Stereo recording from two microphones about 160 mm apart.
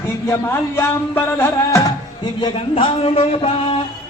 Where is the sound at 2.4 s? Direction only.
35° left (ahead or behind).